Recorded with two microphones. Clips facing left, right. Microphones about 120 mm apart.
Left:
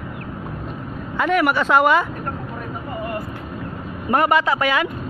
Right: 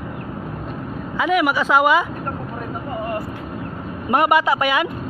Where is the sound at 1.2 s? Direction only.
5° right (ahead or behind).